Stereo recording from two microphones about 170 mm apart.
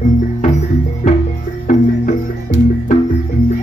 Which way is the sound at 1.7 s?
45° left (ahead or behind).